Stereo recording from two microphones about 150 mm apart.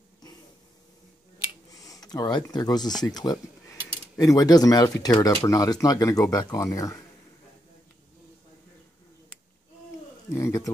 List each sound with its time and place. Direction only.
1.7 s speech: 25° left (ahead or behind)
10.3 s bird: 20° left (ahead or behind)